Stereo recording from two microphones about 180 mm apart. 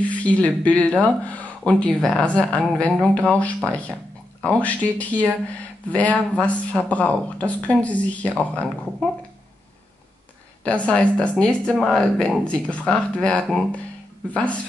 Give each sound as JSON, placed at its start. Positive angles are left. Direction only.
{"t": 0.1, "sound": "speech", "side_deg": 5}
{"t": 10.6, "sound": "speech", "side_deg": 5}